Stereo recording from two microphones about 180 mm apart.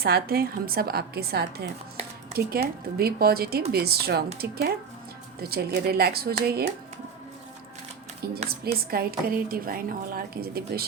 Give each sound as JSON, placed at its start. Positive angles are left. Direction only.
{"t": 0.0, "sound": "a woman's voice", "side_deg": -60}
{"t": 8.4, "sound": "a woman's voice", "side_deg": -55}